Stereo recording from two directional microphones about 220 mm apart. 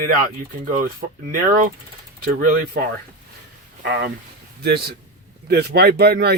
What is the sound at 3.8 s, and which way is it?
Speech, 55° right (ahead or behind).